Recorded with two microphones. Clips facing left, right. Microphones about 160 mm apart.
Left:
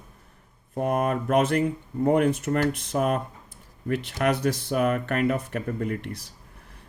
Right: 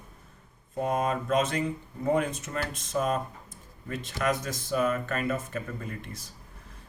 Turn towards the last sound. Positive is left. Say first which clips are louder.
# left 9 dB
turn(degrees=65)  # may be behind; listen again after turning